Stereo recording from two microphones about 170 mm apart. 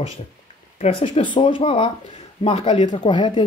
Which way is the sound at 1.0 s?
30° left (ahead or behind).